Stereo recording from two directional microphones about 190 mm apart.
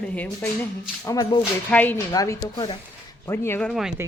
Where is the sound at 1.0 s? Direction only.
15° left (ahead or behind).